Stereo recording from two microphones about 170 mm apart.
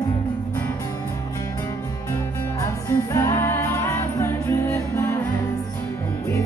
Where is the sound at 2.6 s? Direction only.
15° left (ahead or behind).